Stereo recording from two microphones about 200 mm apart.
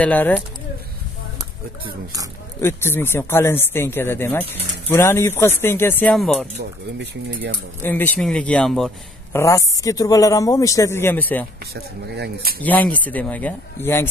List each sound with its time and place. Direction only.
0.0 s speech: 10° left (ahead or behind)
2.6 s speech: 10° left (ahead or behind)
7.8 s speech: 10° left (ahead or behind)
9.3 s speech: 15° left (ahead or behind)
11.7 s speech: 50° right (ahead or behind)
12.6 s speech: 5° left (ahead or behind)